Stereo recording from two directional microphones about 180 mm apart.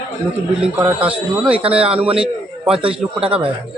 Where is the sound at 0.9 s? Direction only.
5° right (ahead or behind).